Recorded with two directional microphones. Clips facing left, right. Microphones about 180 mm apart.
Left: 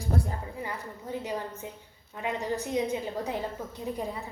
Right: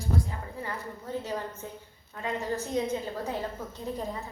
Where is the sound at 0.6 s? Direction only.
15° left (ahead or behind).